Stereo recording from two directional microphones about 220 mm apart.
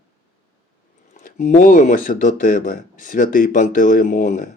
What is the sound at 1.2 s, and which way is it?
Speech, 35° left (ahead or behind).